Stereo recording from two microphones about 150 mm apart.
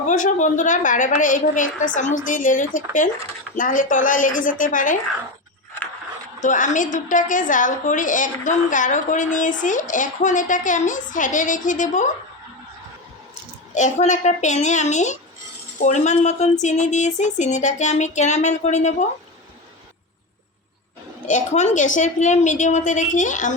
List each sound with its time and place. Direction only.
0.0 s a woman's voice: 55° left (ahead or behind)
6.4 s a woman's voice: 55° left (ahead or behind)
13.7 s speech: 55° left (ahead or behind)
21.2 s a woman's voice: 55° left (ahead or behind)